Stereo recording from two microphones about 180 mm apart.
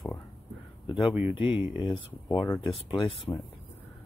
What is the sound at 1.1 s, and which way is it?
Speech, 10° right (ahead or behind).